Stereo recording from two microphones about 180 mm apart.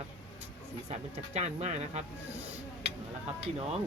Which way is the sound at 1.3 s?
40° right (ahead or behind).